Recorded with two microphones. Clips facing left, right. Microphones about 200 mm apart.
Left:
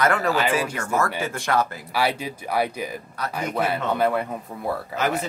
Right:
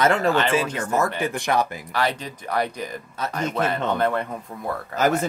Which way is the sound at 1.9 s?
10° left (ahead or behind).